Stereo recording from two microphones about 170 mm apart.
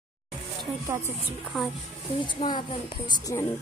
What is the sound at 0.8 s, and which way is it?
Speech, 15° right (ahead or behind).